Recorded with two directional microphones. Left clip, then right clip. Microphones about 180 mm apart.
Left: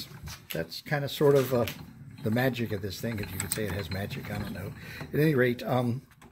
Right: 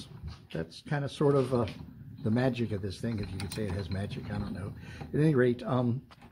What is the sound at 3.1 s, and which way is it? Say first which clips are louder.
Speech: left 3 dB; 20° left (ahead or behind).